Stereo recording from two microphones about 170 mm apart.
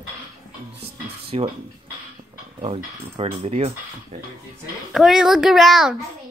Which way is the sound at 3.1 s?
35° right (ahead or behind).